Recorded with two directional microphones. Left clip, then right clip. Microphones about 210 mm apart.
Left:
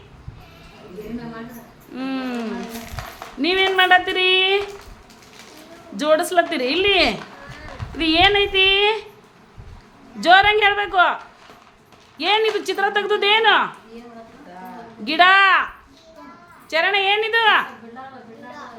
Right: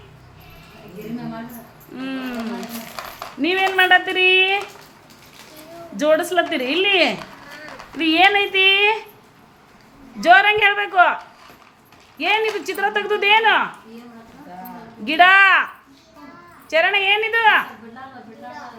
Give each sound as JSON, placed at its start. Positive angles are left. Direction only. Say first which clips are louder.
{"t": 2.0, "sound": "a sound", "louder": "left 2 dB", "side_deg": 15}
{"t": 3.0, "sound": "a sound", "louder": "right 3 dB", "side_deg": -35}
{"t": 3.4, "sound": "speech", "louder": "even", "side_deg": 10}
{"t": 6.0, "sound": "a woman's voice", "louder": "even", "side_deg": 5}
{"t": 10.2, "sound": "a woman's voice", "louder": "right 1 dB", "side_deg": 0}
{"t": 12.2, "sound": "speech", "louder": "left 1 dB", "side_deg": 10}
{"t": 15.0, "sound": "a woman's voice", "louder": "right 1 dB", "side_deg": 0}